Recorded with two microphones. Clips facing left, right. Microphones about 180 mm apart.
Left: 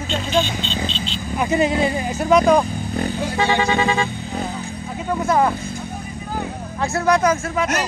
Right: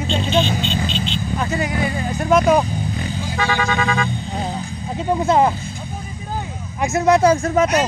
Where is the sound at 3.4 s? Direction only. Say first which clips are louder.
Left 2 dB; 25° left (ahead or behind).